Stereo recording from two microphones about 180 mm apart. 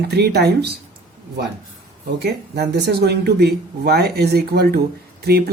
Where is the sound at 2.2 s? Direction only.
65° right (ahead or behind).